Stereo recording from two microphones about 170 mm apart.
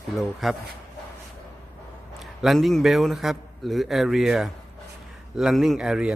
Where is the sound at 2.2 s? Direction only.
Centre (ahead or behind).